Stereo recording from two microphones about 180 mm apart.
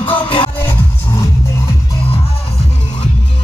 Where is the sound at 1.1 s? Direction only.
15° left (ahead or behind).